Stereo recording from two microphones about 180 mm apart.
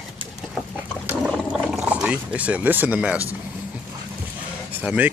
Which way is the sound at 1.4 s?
Centre (ahead or behind).